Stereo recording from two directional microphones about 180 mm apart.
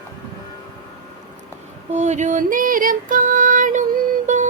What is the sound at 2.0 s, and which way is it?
Female singing, 40° right (ahead or behind).